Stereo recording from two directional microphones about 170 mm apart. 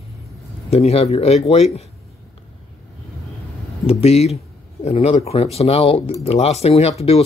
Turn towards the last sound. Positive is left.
turn(degrees=35)  # may be behind; listen again after turning